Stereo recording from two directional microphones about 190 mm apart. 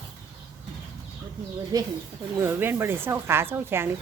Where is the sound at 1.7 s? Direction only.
20° right (ahead or behind).